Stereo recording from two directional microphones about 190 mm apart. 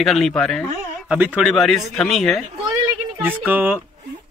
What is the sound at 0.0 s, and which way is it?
Speech, centre (ahead or behind).